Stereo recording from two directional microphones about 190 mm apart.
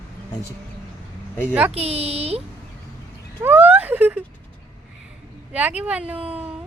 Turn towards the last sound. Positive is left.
turn(degrees=-5)  # may be behind; listen again after turning